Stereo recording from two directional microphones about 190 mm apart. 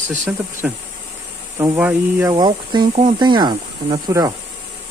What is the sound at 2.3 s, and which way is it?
Speech, 25° right (ahead or behind).